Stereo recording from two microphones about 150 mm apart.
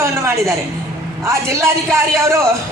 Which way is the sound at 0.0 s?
15° right (ahead or behind).